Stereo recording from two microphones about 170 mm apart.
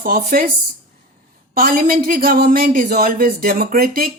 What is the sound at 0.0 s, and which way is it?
Speech, 65° right (ahead or behind).